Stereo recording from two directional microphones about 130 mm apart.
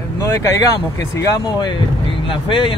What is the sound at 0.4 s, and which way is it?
Speech, 25° left (ahead or behind).